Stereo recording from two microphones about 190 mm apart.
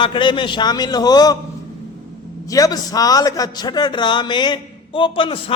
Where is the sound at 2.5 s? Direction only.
20° left (ahead or behind).